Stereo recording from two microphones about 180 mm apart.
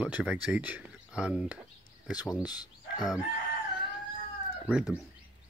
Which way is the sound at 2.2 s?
20° left (ahead or behind).